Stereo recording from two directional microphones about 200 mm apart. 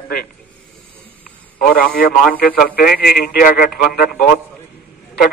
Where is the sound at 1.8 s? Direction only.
45° left (ahead or behind).